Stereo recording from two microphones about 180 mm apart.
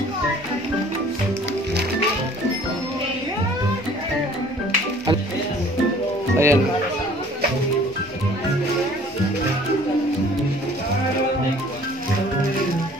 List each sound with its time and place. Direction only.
6.3 s music: 15° right (ahead or behind)